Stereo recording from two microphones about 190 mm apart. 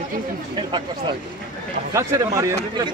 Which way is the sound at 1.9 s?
15° right (ahead or behind).